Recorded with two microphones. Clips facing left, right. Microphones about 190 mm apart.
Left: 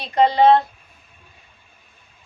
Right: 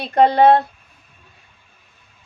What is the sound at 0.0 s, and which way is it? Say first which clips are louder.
Speech: right 2 dB; 60° right (ahead or behind).